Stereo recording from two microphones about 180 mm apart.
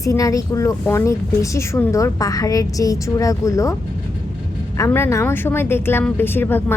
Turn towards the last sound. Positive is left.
turn(degrees=10)  # may be behind; listen again after turning